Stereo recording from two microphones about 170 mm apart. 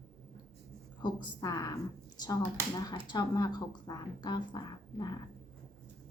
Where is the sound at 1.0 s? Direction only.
20° left (ahead or behind).